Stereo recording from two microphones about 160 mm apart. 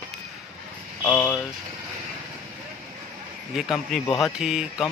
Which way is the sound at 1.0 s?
10° left (ahead or behind).